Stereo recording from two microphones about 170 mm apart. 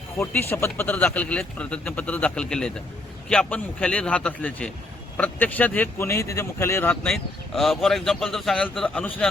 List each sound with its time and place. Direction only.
0.2 s speech: 15° left (ahead or behind)
7.1 s speech: centre (ahead or behind)